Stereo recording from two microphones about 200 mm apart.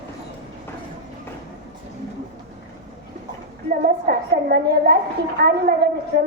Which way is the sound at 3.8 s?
45° right (ahead or behind).